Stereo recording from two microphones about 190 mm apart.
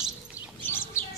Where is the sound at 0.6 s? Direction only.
10° left (ahead or behind).